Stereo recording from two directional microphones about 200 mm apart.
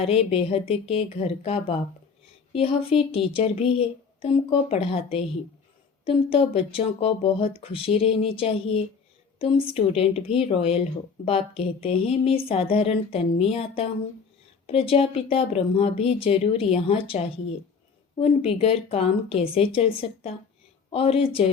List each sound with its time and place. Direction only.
0.0 s speech: 30° left (ahead or behind)